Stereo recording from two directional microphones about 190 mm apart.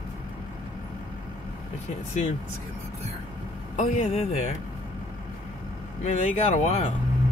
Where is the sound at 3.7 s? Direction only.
40° left (ahead or behind).